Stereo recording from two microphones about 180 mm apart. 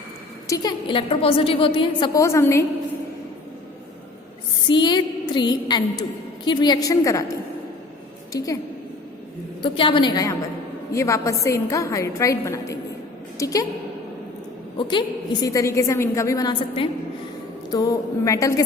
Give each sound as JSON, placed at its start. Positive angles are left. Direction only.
{"t": 0.4, "sound": "a woman's voice", "side_deg": 20}
{"t": 2.1, "sound": "a woman's voice", "side_deg": 15}
{"t": 4.7, "sound": "a woman's voice", "side_deg": 25}
{"t": 8.3, "sound": "a woman's voice", "side_deg": 20}
{"t": 9.6, "sound": "a woman's voice", "side_deg": 30}
{"t": 14.8, "sound": "a woman's voice", "side_deg": 25}